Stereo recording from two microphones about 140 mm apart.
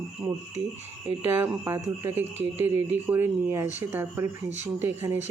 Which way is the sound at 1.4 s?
20° right (ahead or behind).